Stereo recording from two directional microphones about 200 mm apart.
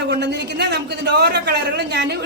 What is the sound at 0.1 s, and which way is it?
A man's voice, 55° right (ahead or behind).